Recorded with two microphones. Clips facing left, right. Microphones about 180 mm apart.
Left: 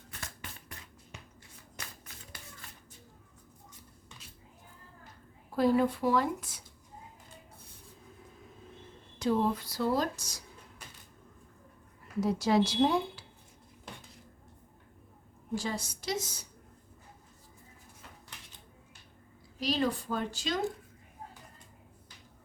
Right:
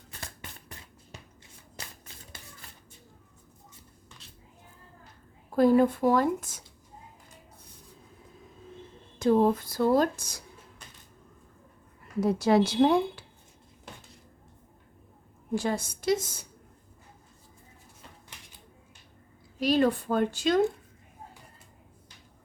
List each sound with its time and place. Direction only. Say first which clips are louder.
1.1 s shuffle: right 2 dB; 35° right (ahead or behind)
5.5 s speech: right 5 dB; 50° right (ahead or behind)
9.1 s speech: right 6 dB; 50° right (ahead or behind)
12.2 s speech: right 4 dB; 55° right (ahead or behind)
15.5 s speech: right 6 dB; 55° right (ahead or behind)
19.5 s speech: right 7 dB; 55° right (ahead or behind)